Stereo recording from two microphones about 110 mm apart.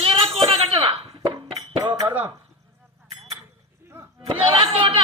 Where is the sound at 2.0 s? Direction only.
15° right (ahead or behind).